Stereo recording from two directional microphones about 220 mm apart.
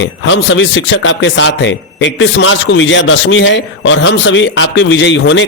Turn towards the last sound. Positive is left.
turn(degrees=55)  # may be behind; listen again after turning